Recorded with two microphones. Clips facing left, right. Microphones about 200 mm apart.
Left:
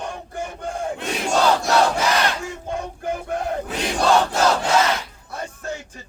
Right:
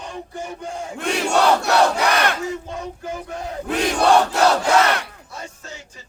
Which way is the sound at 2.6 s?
55° left (ahead or behind).